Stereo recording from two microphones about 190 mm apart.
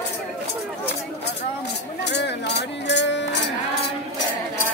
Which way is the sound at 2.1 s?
65° left (ahead or behind).